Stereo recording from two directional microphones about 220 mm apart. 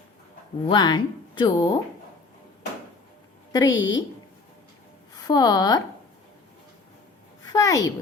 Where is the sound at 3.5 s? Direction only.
15° left (ahead or behind).